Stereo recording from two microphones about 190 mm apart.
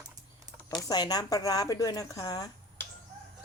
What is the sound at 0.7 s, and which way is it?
Speech, 20° left (ahead or behind).